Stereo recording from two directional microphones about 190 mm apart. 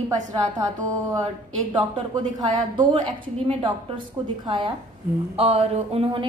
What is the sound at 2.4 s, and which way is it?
A woman's voice, 25° right (ahead or behind).